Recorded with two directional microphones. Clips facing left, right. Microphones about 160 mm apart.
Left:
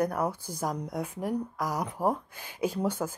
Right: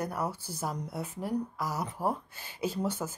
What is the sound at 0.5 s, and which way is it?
Speech, 10° left (ahead or behind).